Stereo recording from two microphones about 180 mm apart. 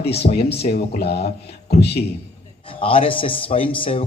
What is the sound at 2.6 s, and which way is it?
A man's voice, 30° left (ahead or behind).